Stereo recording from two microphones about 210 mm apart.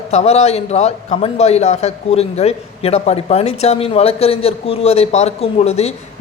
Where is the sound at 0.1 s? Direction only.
30° left (ahead or behind).